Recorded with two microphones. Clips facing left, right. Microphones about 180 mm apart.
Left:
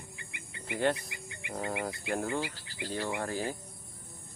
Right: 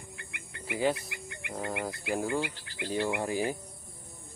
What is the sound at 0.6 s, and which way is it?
Chicken, 5° right (ahead or behind).